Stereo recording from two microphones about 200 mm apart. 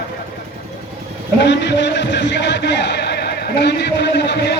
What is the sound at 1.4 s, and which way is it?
A man's voice, 60° left (ahead or behind).